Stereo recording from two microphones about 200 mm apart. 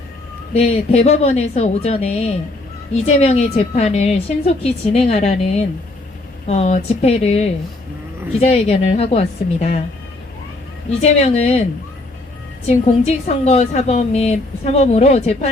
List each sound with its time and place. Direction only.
0.5 s a woman's voice: 30° left (ahead or behind)
11.0 s a woman's voice: 30° left (ahead or behind)
12.6 s a woman's voice: 35° left (ahead or behind)